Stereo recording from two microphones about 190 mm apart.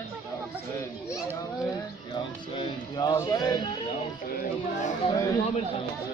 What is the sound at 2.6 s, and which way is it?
Speech, 25° left (ahead or behind).